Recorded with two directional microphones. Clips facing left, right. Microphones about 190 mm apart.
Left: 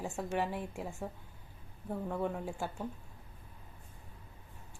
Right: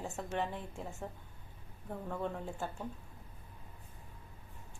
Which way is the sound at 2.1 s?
10° left (ahead or behind).